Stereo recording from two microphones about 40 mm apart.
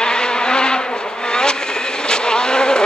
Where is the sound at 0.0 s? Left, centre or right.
Left.